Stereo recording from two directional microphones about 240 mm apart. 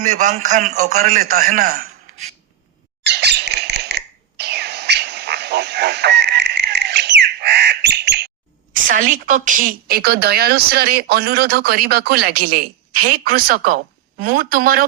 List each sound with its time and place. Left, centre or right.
0.0 s speech: right
3.0 s a sound: right
8.7 s speech: right